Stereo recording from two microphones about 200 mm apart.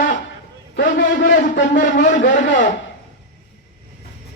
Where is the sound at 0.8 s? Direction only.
40° left (ahead or behind).